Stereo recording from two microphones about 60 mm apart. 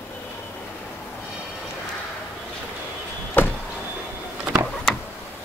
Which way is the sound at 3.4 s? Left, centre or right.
Left.